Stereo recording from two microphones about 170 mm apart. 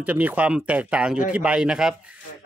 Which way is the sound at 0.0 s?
10° right (ahead or behind).